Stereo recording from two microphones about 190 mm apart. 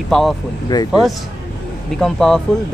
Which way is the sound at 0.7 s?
20° left (ahead or behind).